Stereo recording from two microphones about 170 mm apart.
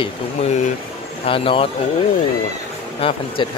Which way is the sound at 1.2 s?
35° left (ahead or behind).